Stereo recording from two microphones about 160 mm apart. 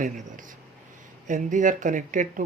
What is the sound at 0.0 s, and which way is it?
Speech, 50° right (ahead or behind).